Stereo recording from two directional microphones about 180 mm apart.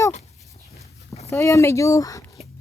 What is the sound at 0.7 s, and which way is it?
Walk, 35° left (ahead or behind).